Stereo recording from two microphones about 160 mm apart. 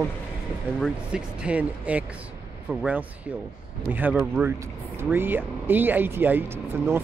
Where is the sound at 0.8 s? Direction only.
5° right (ahead or behind).